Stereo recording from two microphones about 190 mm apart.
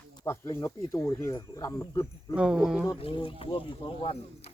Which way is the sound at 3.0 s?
25° left (ahead or behind).